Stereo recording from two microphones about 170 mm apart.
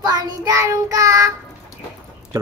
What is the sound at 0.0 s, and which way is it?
Child singing, 25° right (ahead or behind).